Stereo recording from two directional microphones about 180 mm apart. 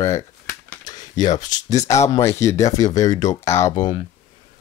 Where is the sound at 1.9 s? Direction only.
15° left (ahead or behind).